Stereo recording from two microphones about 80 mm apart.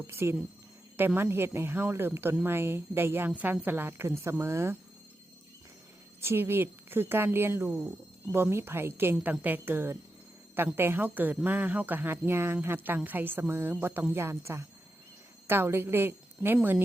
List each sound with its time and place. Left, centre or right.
0.1 s speech: right
6.1 s a woman's voice: right